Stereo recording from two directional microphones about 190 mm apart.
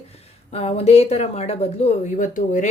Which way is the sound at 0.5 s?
30° left (ahead or behind).